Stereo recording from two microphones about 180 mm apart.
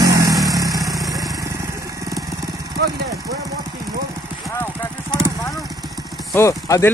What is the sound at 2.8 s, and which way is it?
Vehicle, 70° right (ahead or behind).